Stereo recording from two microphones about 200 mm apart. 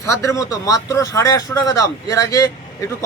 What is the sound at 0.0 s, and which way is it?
Speech, 15° left (ahead or behind).